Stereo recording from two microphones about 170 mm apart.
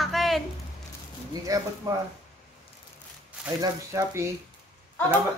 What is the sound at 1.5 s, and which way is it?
Speech, 20° right (ahead or behind).